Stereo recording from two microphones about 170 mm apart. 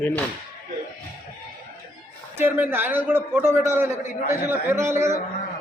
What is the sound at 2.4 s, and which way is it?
A man's voice, 10° right (ahead or behind).